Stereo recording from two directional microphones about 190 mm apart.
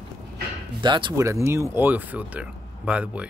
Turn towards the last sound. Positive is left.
turn(degrees=-5)  # may be behind; listen again after turning